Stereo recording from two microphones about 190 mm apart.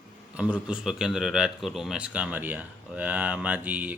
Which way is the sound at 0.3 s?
5° right (ahead or behind).